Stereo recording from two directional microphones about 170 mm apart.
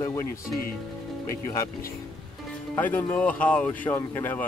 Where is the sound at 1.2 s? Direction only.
15° left (ahead or behind).